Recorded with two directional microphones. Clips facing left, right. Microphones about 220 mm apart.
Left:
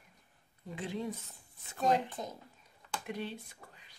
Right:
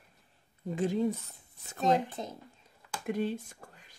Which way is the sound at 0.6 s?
45° right (ahead or behind).